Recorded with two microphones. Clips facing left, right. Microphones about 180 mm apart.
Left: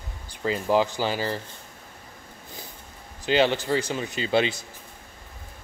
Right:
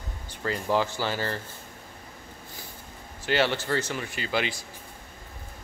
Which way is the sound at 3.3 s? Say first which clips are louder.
Left 4 dB; 15° left (ahead or behind).